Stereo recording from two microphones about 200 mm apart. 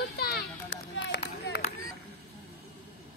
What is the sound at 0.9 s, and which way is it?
Run, 65° left (ahead or behind).